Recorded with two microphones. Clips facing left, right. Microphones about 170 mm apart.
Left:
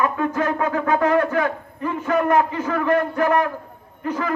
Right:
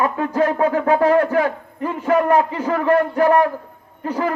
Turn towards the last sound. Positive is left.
turn(degrees=-30)  # may be behind; listen again after turning